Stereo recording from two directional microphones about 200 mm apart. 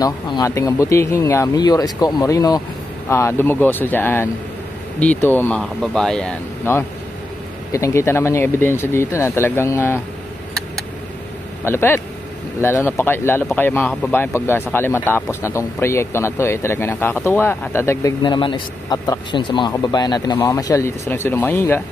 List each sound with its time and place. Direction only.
0.0 s speech: 20° left (ahead or behind)
11.6 s speech: 10° left (ahead or behind)